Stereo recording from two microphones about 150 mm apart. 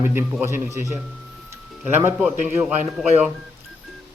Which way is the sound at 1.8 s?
15° right (ahead or behind).